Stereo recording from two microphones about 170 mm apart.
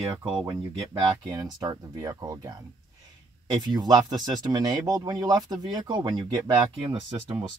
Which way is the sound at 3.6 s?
25° right (ahead or behind).